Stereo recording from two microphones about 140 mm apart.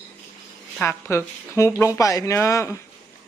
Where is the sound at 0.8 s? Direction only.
20° left (ahead or behind).